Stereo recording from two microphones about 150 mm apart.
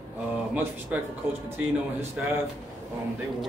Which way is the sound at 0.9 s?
10° right (ahead or behind).